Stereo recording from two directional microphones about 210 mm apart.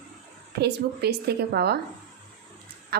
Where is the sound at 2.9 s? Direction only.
50° right (ahead or behind).